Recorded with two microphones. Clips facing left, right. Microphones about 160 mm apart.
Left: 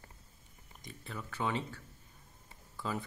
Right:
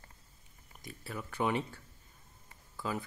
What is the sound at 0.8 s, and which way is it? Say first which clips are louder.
Speech: right 2 dB; 5° right (ahead or behind).